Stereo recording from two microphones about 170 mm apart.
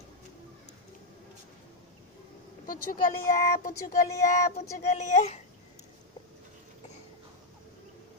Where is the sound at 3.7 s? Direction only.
50° left (ahead or behind).